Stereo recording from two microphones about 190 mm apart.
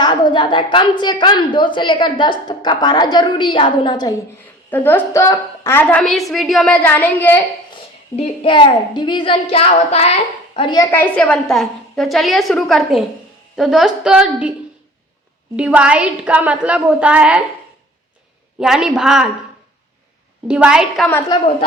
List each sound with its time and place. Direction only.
0.0 s a woman's voice: 20° left (ahead or behind)
4.7 s a woman's voice: 10° left (ahead or behind)
7.7 s a woman's voice: 30° left (ahead or behind)
10.9 s a woman's voice: 5° left (ahead or behind)
15.5 s a woman's voice: 5° right (ahead or behind)
18.6 s a woman's voice: 5° right (ahead or behind)
20.5 s a woman's voice: 5° right (ahead or behind)